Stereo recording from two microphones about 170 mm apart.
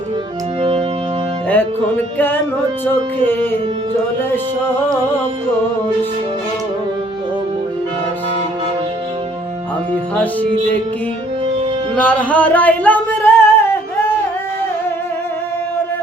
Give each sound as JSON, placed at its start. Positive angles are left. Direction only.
{"t": 0.6, "sound": "organ", "side_deg": -35}
{"t": 2.1, "sound": "music", "side_deg": 10}
{"t": 11.9, "sound": "singing", "side_deg": 10}